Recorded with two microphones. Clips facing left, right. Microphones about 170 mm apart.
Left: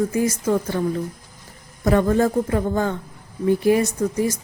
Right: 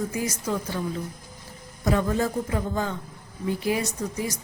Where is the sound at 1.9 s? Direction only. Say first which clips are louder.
Left 6 dB; 55° left (ahead or behind).